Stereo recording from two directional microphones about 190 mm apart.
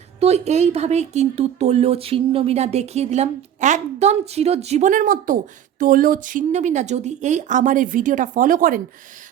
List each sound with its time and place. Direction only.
0.2 s a woman's voice: 35° right (ahead or behind)